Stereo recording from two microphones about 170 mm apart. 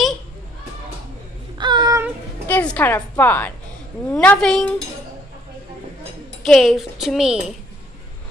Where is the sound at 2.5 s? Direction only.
10° left (ahead or behind).